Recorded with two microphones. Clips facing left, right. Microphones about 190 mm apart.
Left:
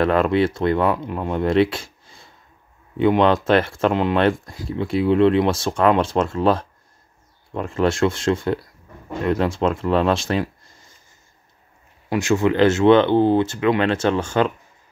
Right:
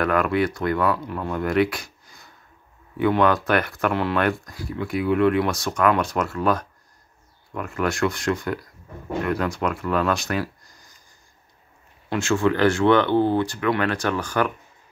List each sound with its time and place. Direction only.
0.0 s speech: 25° left (ahead or behind)
12.1 s speech: 15° left (ahead or behind)